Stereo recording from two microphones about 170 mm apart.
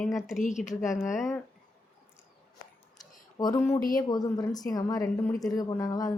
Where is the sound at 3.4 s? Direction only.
20° left (ahead or behind).